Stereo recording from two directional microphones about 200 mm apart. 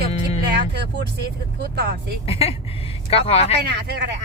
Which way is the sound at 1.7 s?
55° right (ahead or behind).